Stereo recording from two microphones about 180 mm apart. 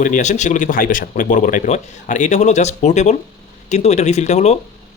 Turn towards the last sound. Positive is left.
turn(degrees=35)  # may be behind; listen again after turning